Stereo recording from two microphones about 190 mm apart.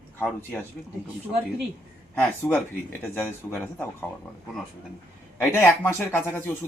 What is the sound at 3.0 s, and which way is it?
Speech, 10° left (ahead or behind).